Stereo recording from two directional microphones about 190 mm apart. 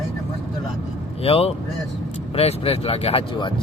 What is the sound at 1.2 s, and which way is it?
Speech, 30° left (ahead or behind).